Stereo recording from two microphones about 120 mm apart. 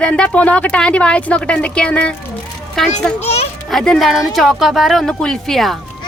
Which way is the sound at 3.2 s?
60° left (ahead or behind).